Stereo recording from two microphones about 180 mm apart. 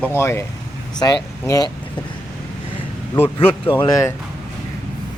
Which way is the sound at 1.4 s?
20° left (ahead or behind).